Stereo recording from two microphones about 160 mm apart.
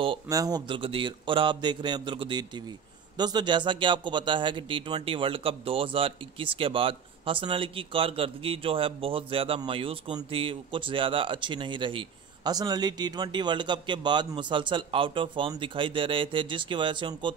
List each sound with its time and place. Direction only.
0.3 s a man's voice: 25° right (ahead or behind)